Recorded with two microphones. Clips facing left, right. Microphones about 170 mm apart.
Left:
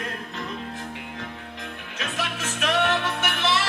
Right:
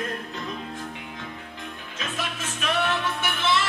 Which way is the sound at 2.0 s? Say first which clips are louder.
Left 2 dB; 70° left (ahead or behind).